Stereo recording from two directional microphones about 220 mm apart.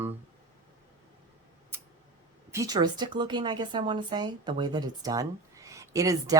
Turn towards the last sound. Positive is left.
turn(degrees=-15)  # may be behind; listen again after turning